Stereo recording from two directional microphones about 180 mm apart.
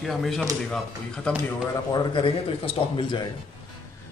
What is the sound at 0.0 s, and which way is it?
Speech, centre (ahead or behind).